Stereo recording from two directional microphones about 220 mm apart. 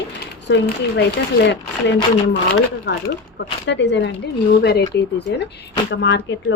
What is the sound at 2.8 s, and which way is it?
Speech, 50° left (ahead or behind).